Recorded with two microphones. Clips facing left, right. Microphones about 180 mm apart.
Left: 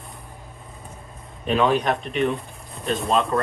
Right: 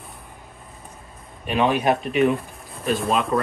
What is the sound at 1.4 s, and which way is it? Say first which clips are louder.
Speech: even; 15° right (ahead or behind).